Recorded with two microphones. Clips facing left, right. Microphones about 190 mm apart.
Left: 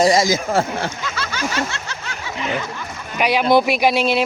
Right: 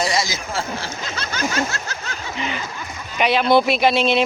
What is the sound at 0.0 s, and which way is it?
Speech, 50° left (ahead or behind).